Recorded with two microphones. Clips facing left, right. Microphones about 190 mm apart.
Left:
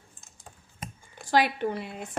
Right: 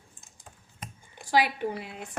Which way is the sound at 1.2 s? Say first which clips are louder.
Left 1 dB; 10° right (ahead or behind).